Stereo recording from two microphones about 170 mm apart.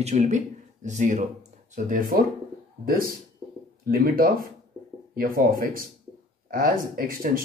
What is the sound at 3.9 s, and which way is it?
Speech, 60° right (ahead or behind).